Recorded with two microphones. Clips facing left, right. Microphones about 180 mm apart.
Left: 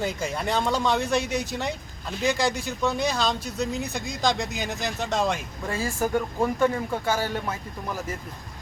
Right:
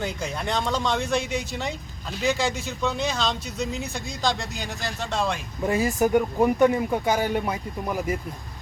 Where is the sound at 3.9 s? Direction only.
15° left (ahead or behind).